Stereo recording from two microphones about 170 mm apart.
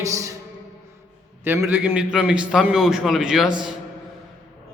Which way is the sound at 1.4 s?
15° right (ahead or behind).